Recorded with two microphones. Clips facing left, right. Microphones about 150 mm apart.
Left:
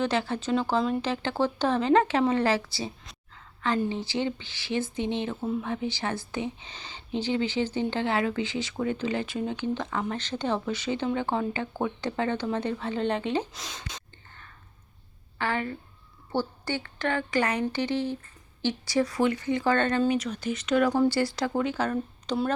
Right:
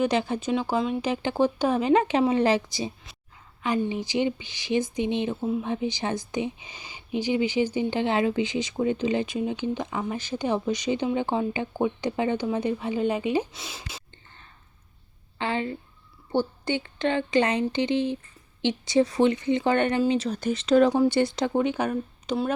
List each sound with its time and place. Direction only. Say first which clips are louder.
0.0 s speech: right 3 dB; 15° right (ahead or behind)
3.3 s a sound: right 1 dB; 15° right (ahead or behind)
3.8 s speech: right 3 dB; 15° right (ahead or behind)
15.4 s a woman's voice: right 2 dB; 20° right (ahead or behind)
20.1 s a woman's voice: right 3 dB; 30° right (ahead or behind); by 22.4 s 15° right (ahead or behind)